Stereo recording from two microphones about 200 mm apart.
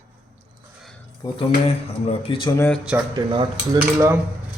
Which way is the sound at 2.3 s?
25° left (ahead or behind).